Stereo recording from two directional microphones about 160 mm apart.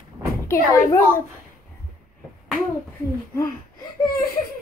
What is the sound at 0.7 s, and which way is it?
Speech, 20° left (ahead or behind).